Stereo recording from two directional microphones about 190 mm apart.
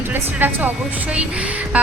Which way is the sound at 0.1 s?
10° right (ahead or behind).